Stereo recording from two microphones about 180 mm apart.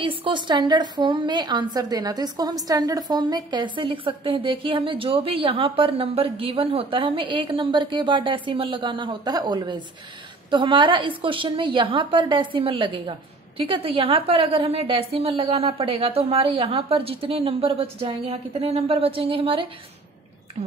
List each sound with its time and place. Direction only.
0.0 s a woman's voice: 30° right (ahead or behind)